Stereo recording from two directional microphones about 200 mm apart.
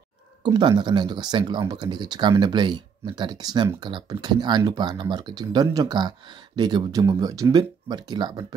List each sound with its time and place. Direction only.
0.4 s speech: 20° right (ahead or behind)